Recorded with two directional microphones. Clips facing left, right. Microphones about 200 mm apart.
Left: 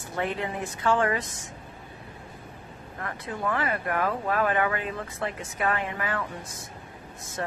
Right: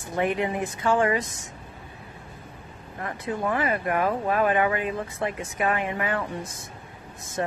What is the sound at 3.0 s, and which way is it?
Speech, 15° right (ahead or behind).